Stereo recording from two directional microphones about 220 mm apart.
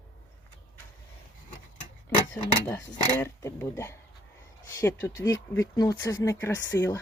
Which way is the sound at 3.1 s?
10° left (ahead or behind).